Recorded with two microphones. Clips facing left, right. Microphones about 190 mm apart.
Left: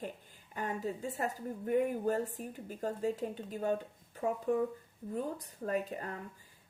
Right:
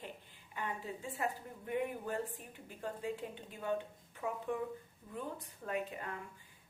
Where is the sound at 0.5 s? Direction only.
40° left (ahead or behind).